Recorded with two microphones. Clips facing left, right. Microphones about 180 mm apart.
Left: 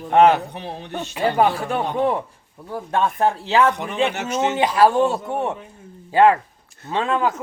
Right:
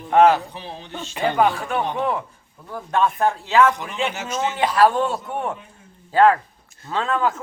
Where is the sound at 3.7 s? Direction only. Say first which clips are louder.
Left 3 dB; 65° left (ahead or behind).